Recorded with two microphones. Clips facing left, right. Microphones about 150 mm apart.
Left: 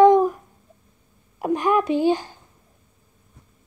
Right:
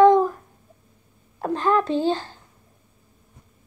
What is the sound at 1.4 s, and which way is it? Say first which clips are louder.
A child's voice: left 1 dB; 15° left (ahead or behind).